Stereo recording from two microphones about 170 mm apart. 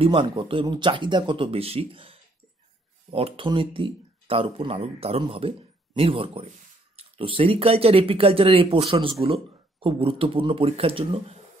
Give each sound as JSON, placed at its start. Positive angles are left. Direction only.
{"t": 0.0, "sound": "speech", "side_deg": -30}